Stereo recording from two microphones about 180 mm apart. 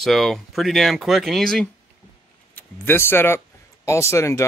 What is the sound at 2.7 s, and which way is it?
Speech, 15° left (ahead or behind).